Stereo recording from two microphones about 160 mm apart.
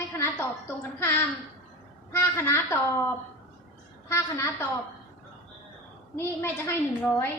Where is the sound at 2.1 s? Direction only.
15° left (ahead or behind).